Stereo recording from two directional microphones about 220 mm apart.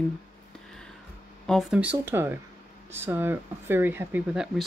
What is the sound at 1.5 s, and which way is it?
Speech, centre (ahead or behind).